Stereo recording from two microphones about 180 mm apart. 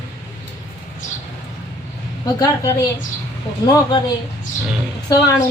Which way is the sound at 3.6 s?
20° left (ahead or behind).